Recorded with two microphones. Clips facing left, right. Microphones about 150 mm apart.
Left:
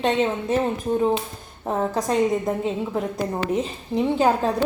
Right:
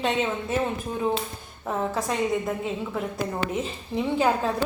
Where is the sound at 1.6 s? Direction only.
35° left (ahead or behind).